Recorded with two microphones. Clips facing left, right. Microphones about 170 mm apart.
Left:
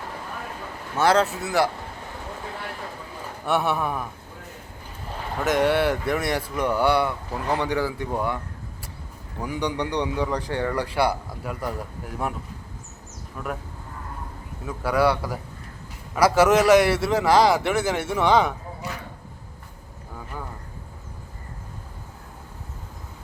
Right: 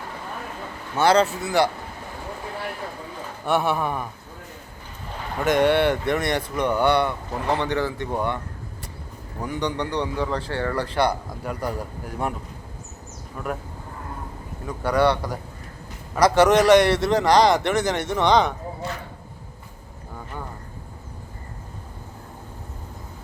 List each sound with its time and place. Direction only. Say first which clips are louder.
0.9 s a man's voice: right 2 dB; centre (ahead or behind)
3.4 s a man's voice: right 1 dB; centre (ahead or behind)
5.4 s a man's voice: right 2 dB; centre (ahead or behind)
9.4 s a man's voice: even; 10° left (ahead or behind)
13.4 s a man's voice: right 2 dB; centre (ahead or behind)
14.7 s a man's voice: right 1 dB; 5° left (ahead or behind)
20.1 s a sound: right 1 dB; centre (ahead or behind)